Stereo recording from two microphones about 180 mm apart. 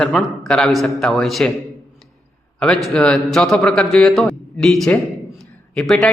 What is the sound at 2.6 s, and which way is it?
A man's voice, 5° left (ahead or behind).